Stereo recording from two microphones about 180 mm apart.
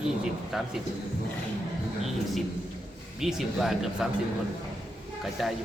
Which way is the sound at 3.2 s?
Centre (ahead or behind).